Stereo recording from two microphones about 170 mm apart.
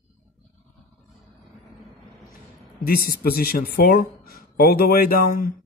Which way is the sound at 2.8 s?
60° left (ahead or behind).